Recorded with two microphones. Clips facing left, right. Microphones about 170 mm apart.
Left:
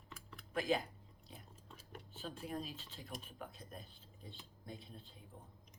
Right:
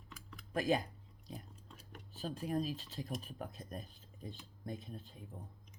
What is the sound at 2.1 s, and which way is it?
Speech, 40° right (ahead or behind).